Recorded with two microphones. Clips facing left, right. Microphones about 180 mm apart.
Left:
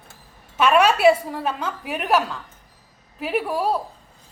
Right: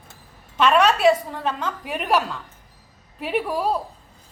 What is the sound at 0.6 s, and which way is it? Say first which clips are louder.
A woman's voice: left 1 dB; 5° left (ahead or behind).